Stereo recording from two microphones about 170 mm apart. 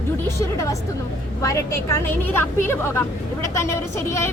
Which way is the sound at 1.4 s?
15° left (ahead or behind).